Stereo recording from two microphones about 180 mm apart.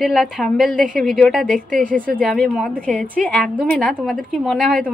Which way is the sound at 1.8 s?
50° right (ahead or behind).